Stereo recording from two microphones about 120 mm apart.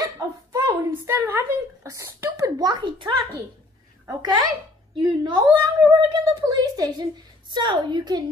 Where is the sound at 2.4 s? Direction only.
35° right (ahead or behind).